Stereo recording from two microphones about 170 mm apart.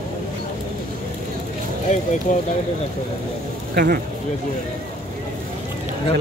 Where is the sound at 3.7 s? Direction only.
65° right (ahead or behind).